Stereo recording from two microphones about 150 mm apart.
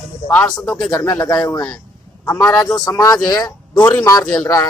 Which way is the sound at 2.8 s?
25° left (ahead or behind).